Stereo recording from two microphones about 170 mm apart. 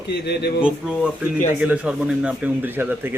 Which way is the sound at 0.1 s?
70° left (ahead or behind).